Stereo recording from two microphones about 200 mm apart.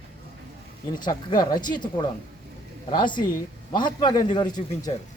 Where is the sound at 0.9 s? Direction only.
20° left (ahead or behind).